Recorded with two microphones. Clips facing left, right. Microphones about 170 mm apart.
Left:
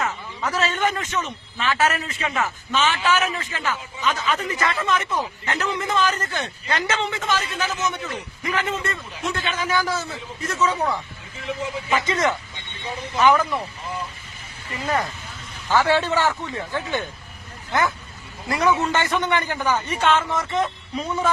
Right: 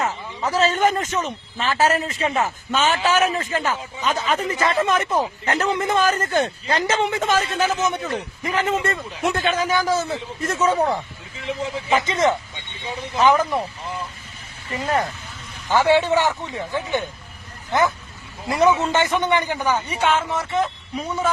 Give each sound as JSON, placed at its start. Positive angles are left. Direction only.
{"t": 0.0, "sound": "a man's voice", "side_deg": -30}
{"t": 5.7, "sound": "a man's voice", "side_deg": -50}
{"t": 6.7, "sound": "a man's voice", "side_deg": -35}
{"t": 7.2, "sound": "a man's voice", "side_deg": -45}
{"t": 8.1, "sound": "a man's voice", "side_deg": -35}
{"t": 11.9, "sound": "a man's voice", "side_deg": -25}
{"t": 15.7, "sound": "a man's voice", "side_deg": -15}